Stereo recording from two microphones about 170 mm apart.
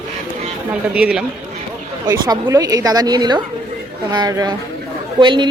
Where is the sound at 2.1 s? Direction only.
20° right (ahead or behind).